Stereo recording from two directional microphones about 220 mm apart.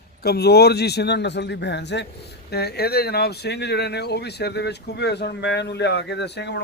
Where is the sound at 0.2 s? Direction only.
45° left (ahead or behind).